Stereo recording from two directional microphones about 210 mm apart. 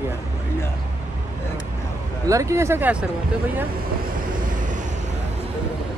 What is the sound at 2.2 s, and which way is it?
Speech, 15° right (ahead or behind).